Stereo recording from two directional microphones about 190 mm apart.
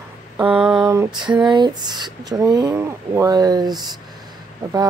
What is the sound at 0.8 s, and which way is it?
Speech, 15° right (ahead or behind).